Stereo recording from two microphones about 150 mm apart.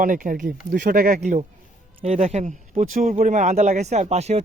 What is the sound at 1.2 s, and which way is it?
Speech, 50° right (ahead or behind).